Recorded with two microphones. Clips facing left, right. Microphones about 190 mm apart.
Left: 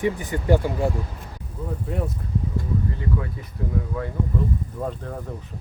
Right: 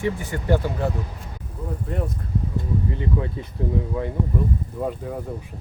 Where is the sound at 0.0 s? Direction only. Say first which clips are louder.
Left 1 dB; 15° left (ahead or behind).